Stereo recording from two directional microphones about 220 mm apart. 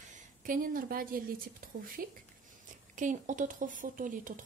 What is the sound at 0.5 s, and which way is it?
A woman's voice, 40° right (ahead or behind).